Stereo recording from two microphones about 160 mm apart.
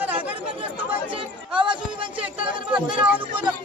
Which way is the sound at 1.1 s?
30° right (ahead or behind).